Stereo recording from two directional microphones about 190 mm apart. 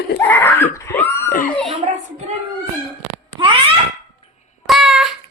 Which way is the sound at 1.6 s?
35° right (ahead or behind).